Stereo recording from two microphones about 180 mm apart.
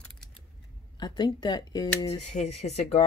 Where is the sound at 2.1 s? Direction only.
40° left (ahead or behind).